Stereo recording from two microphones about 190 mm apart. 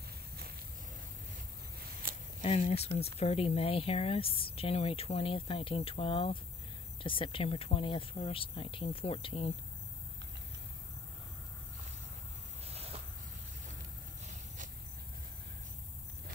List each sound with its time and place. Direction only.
2.4 s speech: 35° left (ahead or behind)
12.6 s insect: 30° right (ahead or behind)